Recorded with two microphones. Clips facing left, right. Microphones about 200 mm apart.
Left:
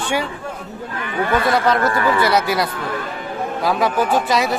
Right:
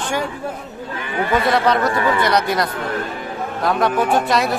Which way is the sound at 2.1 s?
5° left (ahead or behind).